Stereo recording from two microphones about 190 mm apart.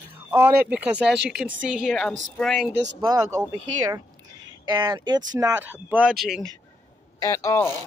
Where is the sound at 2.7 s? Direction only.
65° right (ahead or behind).